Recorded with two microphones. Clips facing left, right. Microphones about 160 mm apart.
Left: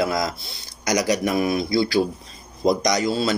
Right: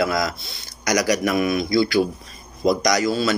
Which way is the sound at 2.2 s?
25° left (ahead or behind).